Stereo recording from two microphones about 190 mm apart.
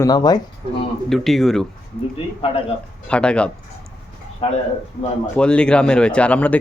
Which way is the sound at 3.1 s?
5° left (ahead or behind).